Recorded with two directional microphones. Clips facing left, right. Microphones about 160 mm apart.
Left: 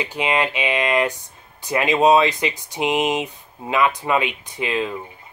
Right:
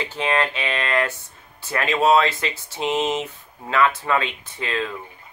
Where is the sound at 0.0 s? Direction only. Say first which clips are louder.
Left 1 dB; 15° left (ahead or behind).